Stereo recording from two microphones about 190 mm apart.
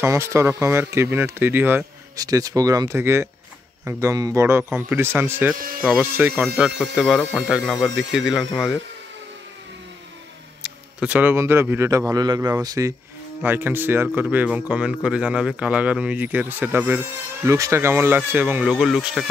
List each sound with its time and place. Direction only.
0.0 s speech: 15° right (ahead or behind)
10.6 s speech: 5° right (ahead or behind)